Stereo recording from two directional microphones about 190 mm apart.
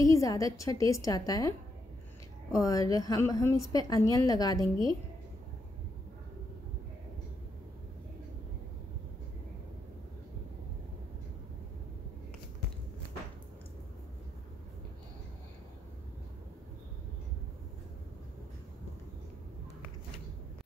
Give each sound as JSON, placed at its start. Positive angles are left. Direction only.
{"t": 0.0, "sound": "a woman's voice", "side_deg": 20}
{"t": 2.5, "sound": "a woman's voice", "side_deg": 20}